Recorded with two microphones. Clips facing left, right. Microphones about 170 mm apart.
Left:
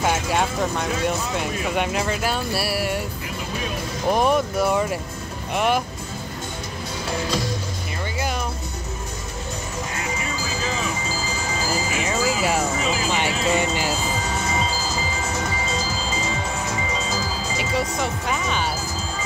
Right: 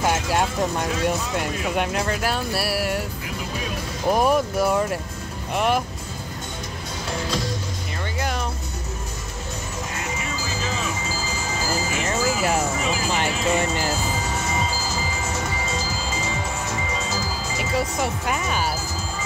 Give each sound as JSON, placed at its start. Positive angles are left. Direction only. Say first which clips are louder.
{"t": 0.0, "sound": "clip-clop", "louder": "even", "side_deg": 0}
{"t": 1.0, "sound": "speech", "louder": "even", "side_deg": 0}
{"t": 4.1, "sound": "speech", "louder": "even", "side_deg": -5}
{"t": 9.9, "sound": "music", "louder": "left 1 dB", "side_deg": -5}
{"t": 10.5, "sound": "music", "louder": "left 1 dB", "side_deg": 15}
{"t": 11.1, "sound": "wind chime", "louder": "left 1 dB", "side_deg": 15}
{"t": 11.9, "sound": "speech", "louder": "left 1 dB", "side_deg": 0}
{"t": 13.9, "sound": "music", "louder": "left 1 dB", "side_deg": 15}
{"t": 17.6, "sound": "speech", "louder": "right 1 dB", "side_deg": 0}